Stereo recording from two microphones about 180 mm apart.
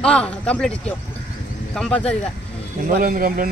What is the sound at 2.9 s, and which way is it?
Speech, 50° right (ahead or behind).